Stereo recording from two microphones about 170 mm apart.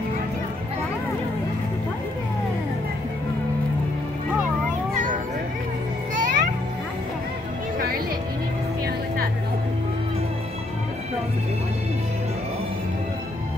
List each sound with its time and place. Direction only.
4.9 s children playing: 50° right (ahead or behind)
6.1 s music: 45° right (ahead or behind)